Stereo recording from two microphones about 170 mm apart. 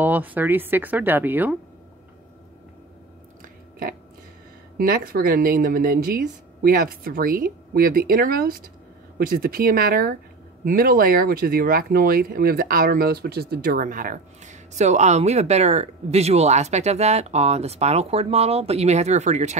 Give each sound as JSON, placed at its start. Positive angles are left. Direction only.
{"t": 0.0, "sound": "speech", "side_deg": -10}
{"t": 4.7, "sound": "speech", "side_deg": -55}